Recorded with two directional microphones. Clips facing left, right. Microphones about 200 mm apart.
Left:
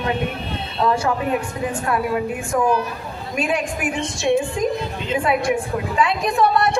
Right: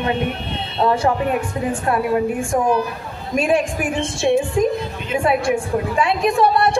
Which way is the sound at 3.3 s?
25° right (ahead or behind).